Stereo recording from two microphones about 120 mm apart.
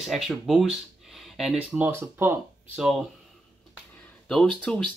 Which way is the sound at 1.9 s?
20° right (ahead or behind).